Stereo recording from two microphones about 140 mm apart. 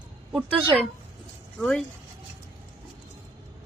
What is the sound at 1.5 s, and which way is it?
Speech, 5° left (ahead or behind).